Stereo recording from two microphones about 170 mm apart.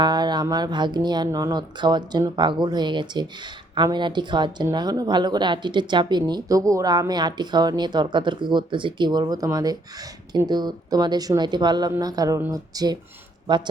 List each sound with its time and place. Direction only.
0.0 s speech: 25° right (ahead or behind)